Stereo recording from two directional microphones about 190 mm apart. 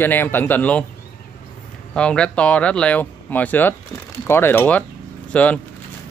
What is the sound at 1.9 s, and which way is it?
Speech, 5° left (ahead or behind).